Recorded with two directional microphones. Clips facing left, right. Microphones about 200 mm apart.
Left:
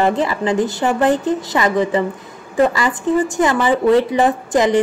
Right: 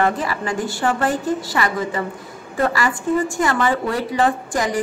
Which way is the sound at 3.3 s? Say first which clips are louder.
Left 4 dB; 20° left (ahead or behind).